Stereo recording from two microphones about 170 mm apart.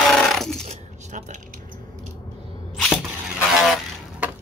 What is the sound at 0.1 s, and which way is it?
Coin, centre (ahead or behind).